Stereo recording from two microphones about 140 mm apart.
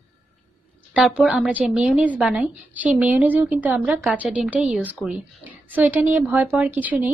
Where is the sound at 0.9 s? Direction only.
5° right (ahead or behind).